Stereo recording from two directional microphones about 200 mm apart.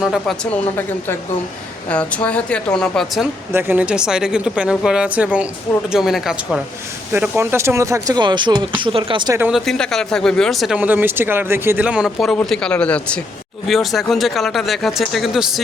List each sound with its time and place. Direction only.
0.0 s speech: centre (ahead or behind)
3.5 s speech: 10° right (ahead or behind)
9.4 s speech: centre (ahead or behind)